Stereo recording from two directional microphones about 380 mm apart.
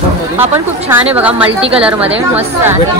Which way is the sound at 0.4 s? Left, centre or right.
Centre.